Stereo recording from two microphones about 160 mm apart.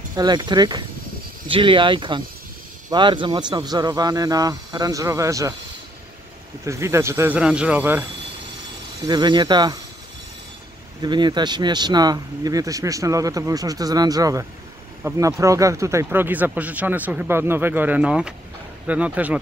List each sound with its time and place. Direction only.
0.1 s speech: 25° right (ahead or behind)
6.6 s speech: 15° right (ahead or behind)
7.3 s speech: 5° right (ahead or behind)
9.0 s speech: 25° right (ahead or behind)
11.0 s speech: 25° right (ahead or behind); by 19.4 s 10° right (ahead or behind)